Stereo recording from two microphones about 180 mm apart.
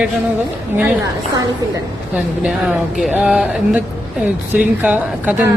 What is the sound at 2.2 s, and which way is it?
Speech, 5° right (ahead or behind).